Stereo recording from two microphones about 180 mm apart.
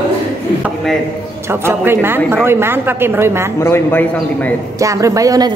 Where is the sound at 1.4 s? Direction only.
15° right (ahead or behind).